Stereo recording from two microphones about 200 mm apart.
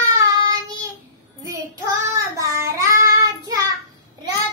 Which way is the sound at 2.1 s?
15° right (ahead or behind).